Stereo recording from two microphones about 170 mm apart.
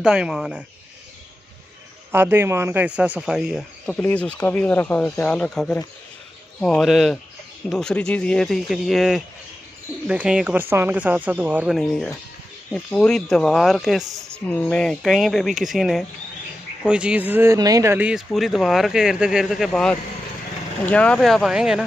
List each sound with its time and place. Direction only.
0.0 s speech: 5° right (ahead or behind)
2.1 s speech: 15° right (ahead or behind)
3.9 s speech: 10° left (ahead or behind); by 17.9 s 20° right (ahead or behind)
17.9 s speech: 5° right (ahead or behind)